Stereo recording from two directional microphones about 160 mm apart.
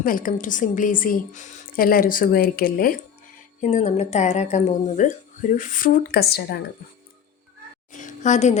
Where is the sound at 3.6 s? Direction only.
45° left (ahead or behind); by 6.6 s 85° left.